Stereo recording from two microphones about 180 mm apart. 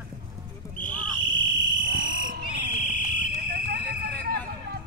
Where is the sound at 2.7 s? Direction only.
45° left (ahead or behind).